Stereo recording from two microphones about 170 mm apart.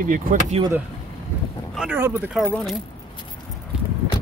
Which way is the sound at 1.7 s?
10° right (ahead or behind).